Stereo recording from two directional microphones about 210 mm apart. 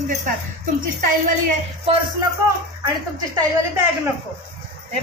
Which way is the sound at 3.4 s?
10° right (ahead or behind).